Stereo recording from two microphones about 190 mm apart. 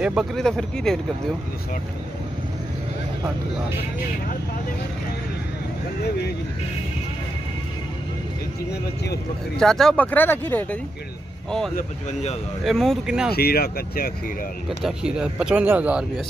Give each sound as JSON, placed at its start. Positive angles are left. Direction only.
{"t": 0.0, "sound": "speech", "side_deg": -5}
{"t": 9.6, "sound": "speech", "side_deg": 0}
{"t": 11.7, "sound": "speech", "side_deg": 35}
{"t": 12.6, "sound": "speech", "side_deg": 0}
{"t": 13.4, "sound": "speech", "side_deg": 55}
{"t": 14.8, "sound": "speech", "side_deg": -5}